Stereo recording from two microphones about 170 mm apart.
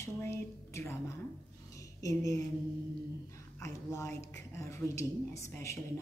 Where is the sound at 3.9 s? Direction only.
15° left (ahead or behind).